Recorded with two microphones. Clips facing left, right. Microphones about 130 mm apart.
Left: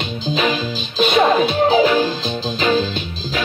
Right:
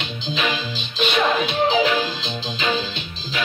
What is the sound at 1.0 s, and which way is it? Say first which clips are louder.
Music: left 6 dB; 40° left (ahead or behind).